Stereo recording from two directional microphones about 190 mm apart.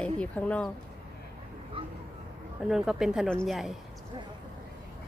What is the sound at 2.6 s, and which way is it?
Speech, 5° right (ahead or behind).